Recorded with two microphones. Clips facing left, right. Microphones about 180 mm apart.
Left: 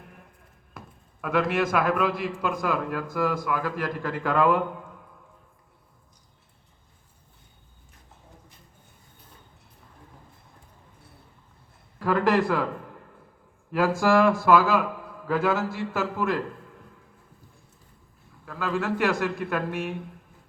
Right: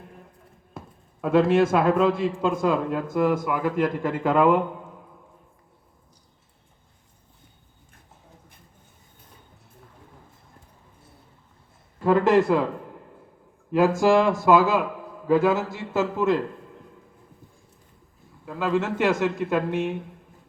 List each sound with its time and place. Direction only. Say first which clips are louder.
1.2 s a man's voice: right 6 dB; 25° right (ahead or behind)
11.9 s a sound: right 4 dB; 20° right (ahead or behind)
13.7 s a man's voice: right 3 dB; 20° right (ahead or behind)
18.4 s a man's voice: right 3 dB; 20° right (ahead or behind)